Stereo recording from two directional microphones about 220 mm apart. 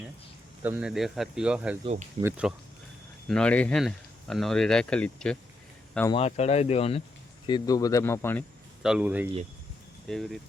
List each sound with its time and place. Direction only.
0.6 s speech: 5° right (ahead or behind)
1.8 s speech: 30° right (ahead or behind)
2.4 s speech: 5° right (ahead or behind)
6.1 s speech: 25° left (ahead or behind); by 8.4 s 10° left (ahead or behind)
8.8 s speech: 5° right (ahead or behind)